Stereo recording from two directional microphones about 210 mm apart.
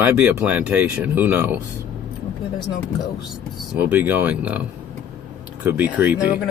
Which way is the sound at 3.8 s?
5° right (ahead or behind).